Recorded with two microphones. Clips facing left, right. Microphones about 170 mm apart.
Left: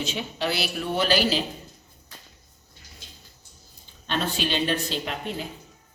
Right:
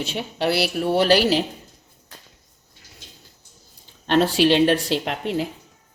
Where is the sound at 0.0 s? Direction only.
65° right (ahead or behind).